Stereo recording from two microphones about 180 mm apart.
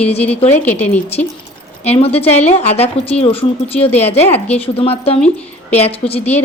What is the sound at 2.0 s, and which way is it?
A woman's voice, 35° left (ahead or behind).